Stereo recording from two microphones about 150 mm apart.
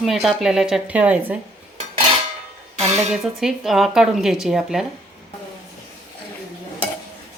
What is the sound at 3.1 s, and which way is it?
Speech, centre (ahead or behind).